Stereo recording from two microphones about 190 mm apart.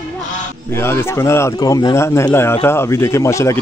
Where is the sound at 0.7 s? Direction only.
15° left (ahead or behind).